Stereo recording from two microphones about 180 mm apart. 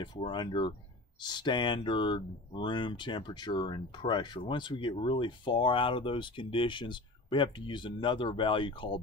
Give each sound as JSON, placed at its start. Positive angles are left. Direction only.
{"t": 0.0, "sound": "speech", "side_deg": 25}